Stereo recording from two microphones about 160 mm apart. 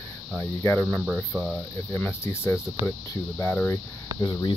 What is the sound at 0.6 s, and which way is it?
Speech, 15° left (ahead or behind).